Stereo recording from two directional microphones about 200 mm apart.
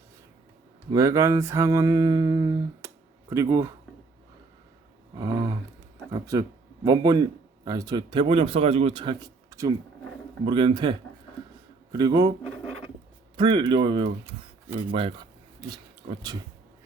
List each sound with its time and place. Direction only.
0.9 s a sound: 15° right (ahead or behind)
5.1 s speech: 25° right (ahead or behind)
13.3 s speech: 20° right (ahead or behind)